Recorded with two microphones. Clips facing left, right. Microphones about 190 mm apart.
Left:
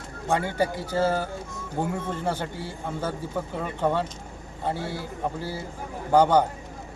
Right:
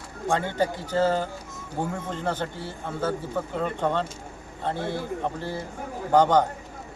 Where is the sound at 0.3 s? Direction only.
10° left (ahead or behind).